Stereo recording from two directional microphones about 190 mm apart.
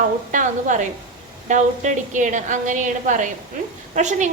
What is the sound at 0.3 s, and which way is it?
A woman's voice, 40° right (ahead or behind).